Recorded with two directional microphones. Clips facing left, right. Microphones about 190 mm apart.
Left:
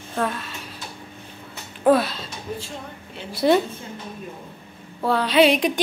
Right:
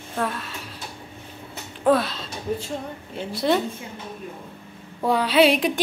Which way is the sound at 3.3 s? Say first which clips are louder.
Left 4 dB; 5° left (ahead or behind).